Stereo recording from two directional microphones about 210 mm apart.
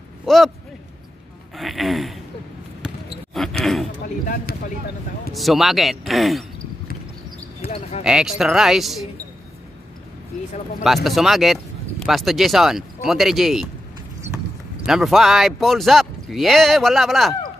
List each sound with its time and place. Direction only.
0.2 s speech: centre (ahead or behind)
1.6 s speech: centre (ahead or behind)
3.4 s a sound: centre (ahead or behind)
4.3 s speech: 40° left (ahead or behind)
5.3 s speech: centre (ahead or behind)
8.0 s speech: 5° right (ahead or behind)
11.1 s speech: centre (ahead or behind)
14.9 s speech: centre (ahead or behind)